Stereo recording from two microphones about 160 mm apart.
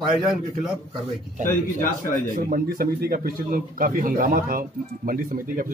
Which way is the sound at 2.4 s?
65° right (ahead or behind).